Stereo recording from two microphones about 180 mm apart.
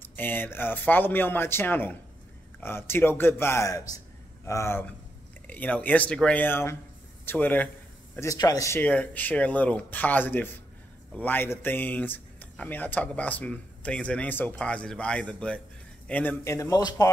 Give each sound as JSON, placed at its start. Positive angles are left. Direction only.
{"t": 0.0, "sound": "speech", "side_deg": 10}